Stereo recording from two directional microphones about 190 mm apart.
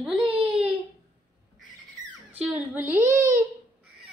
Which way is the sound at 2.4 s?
10° right (ahead or behind).